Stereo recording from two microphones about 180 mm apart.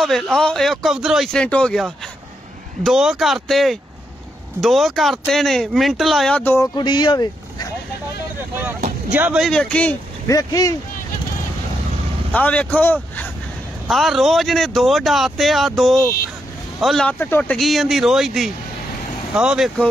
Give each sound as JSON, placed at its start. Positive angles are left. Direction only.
{"t": 0.0, "sound": "speech", "side_deg": 0}
{"t": 6.8, "sound": "speech", "side_deg": 25}
{"t": 9.1, "sound": "speech", "side_deg": -5}
{"t": 10.2, "sound": "speech", "side_deg": 20}
{"t": 12.3, "sound": "speech", "side_deg": 10}